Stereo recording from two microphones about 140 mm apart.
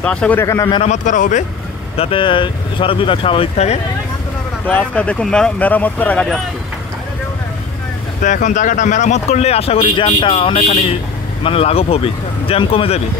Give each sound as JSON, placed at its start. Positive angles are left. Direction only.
{"t": 0.0, "sound": "speech", "side_deg": 10}
{"t": 0.8, "sound": "a man's voice", "side_deg": 60}
{"t": 2.0, "sound": "speech", "side_deg": 40}
{"t": 4.6, "sound": "speech", "side_deg": 10}
{"t": 8.2, "sound": "speech", "side_deg": 60}